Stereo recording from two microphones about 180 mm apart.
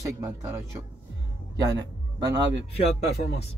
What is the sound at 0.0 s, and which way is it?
Speech, 15° right (ahead or behind).